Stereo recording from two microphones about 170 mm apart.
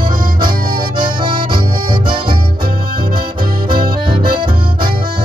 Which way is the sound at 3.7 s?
60° right (ahead or behind).